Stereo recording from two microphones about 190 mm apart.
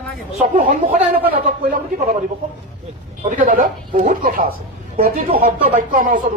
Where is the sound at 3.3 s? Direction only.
45° right (ahead or behind).